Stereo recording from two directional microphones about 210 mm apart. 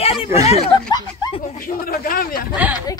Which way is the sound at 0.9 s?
20° left (ahead or behind).